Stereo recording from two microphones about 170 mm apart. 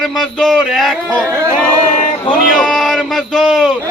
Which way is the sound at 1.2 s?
15° right (ahead or behind).